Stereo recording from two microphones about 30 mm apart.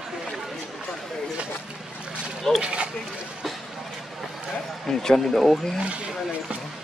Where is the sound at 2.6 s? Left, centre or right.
Right.